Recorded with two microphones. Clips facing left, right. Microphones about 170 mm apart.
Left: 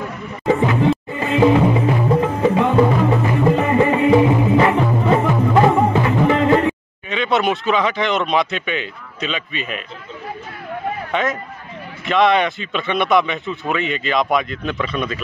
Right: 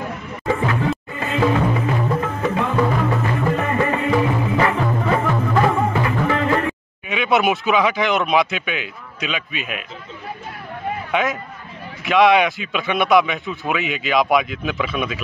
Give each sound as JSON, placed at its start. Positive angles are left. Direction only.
{"t": 0.5, "sound": "music", "side_deg": 20}
{"t": 2.2, "sound": "music", "side_deg": 30}
{"t": 7.1, "sound": "speech", "side_deg": -5}
{"t": 11.1, "sound": "speech", "side_deg": -5}